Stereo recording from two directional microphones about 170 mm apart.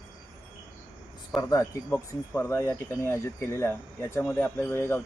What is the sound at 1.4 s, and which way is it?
Speech, 20° left (ahead or behind).